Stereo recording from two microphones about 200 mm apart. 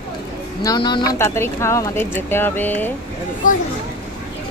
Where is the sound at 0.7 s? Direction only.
20° left (ahead or behind).